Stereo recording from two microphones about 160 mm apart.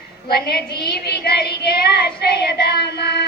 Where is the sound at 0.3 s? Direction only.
80° left.